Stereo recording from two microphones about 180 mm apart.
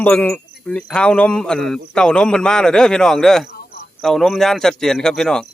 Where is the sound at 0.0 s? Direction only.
10° left (ahead or behind).